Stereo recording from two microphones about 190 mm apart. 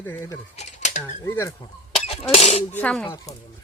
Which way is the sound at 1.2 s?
15° left (ahead or behind).